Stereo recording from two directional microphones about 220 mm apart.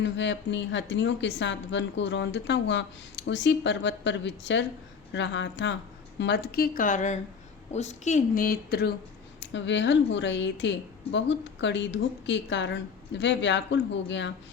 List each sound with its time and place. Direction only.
0.0 s a woman's voice: 55° left (ahead or behind)
9.4 s a woman's voice: 55° left (ahead or behind)